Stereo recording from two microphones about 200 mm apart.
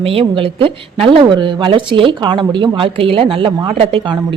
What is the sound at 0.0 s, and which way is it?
Speech, 25° right (ahead or behind).